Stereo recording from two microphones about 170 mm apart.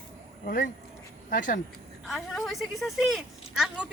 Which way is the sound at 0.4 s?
55° left (ahead or behind).